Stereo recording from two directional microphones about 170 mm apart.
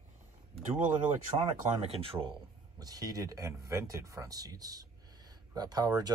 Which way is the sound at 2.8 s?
20° right (ahead or behind).